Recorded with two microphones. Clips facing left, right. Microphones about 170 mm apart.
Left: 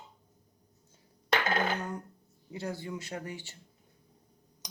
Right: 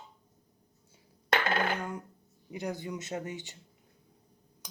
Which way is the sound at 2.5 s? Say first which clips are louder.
Right 1 dB; 20° right (ahead or behind).